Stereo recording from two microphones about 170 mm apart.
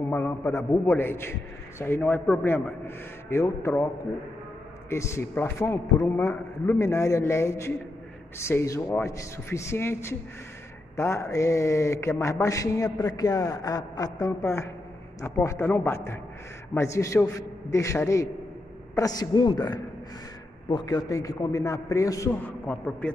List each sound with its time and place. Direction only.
0.1 s speech: 15° left (ahead or behind)
4.8 s a man's voice: 15° left (ahead or behind)